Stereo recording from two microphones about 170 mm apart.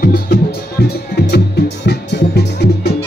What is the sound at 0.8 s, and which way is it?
Music, 70° left (ahead or behind).